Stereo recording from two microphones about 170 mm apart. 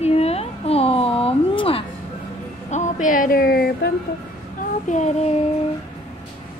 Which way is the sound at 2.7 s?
45° left (ahead or behind).